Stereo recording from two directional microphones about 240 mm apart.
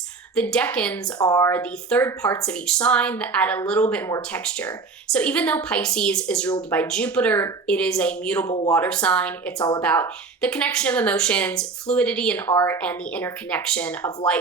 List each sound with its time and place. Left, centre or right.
0.3 s a woman's voice: centre
8.4 s speech: centre
8.7 s a woman's voice: centre